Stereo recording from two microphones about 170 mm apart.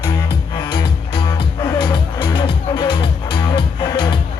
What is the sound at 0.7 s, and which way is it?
Music, 30° left (ahead or behind).